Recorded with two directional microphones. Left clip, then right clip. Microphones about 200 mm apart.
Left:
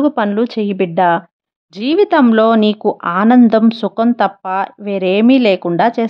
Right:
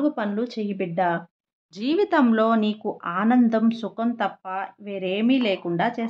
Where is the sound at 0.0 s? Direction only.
40° left (ahead or behind).